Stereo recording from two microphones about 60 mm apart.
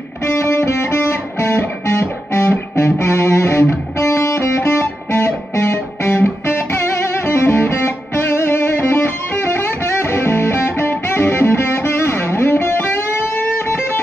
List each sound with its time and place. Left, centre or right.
0.3 s music: left